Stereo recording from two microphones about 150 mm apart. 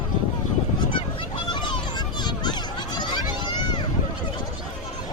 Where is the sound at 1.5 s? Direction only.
30° left (ahead or behind).